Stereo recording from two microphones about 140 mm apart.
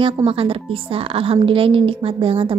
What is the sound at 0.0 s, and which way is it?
A woman's voice, 40° right (ahead or behind).